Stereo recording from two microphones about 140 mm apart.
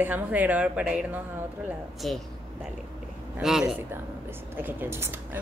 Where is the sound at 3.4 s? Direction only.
5° right (ahead or behind).